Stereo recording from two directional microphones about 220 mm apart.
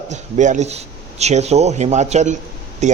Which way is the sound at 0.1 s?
35° right (ahead or behind).